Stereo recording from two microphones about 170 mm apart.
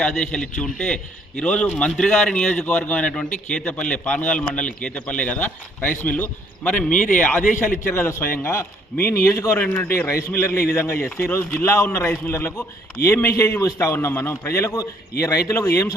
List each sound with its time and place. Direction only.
0.0 s a man's voice: 5° left (ahead or behind)
6.9 s a man's voice: 50° left (ahead or behind)
7.9 s a man's voice: 15° left (ahead or behind)